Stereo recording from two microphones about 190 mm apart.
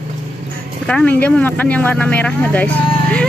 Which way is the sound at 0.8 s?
5° left (ahead or behind).